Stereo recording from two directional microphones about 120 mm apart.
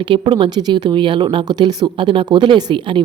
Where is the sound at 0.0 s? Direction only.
45° right (ahead or behind).